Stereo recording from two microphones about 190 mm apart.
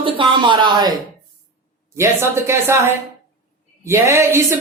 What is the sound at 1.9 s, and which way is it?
Speech, 15° right (ahead or behind).